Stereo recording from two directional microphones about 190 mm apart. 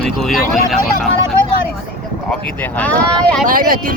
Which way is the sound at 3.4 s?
45° right (ahead or behind).